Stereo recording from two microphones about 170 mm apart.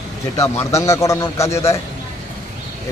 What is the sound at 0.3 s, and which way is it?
Speech, 15° left (ahead or behind).